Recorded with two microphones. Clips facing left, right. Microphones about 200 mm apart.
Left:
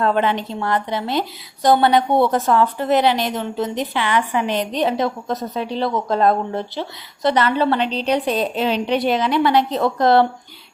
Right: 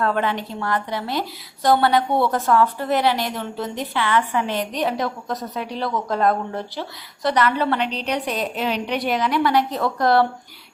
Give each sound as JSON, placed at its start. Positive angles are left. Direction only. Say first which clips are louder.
{"t": 0.0, "sound": "a woman's voice", "louder": "left 3 dB", "side_deg": 25}